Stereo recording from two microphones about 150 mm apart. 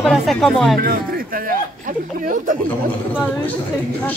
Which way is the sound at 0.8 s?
70° right (ahead or behind).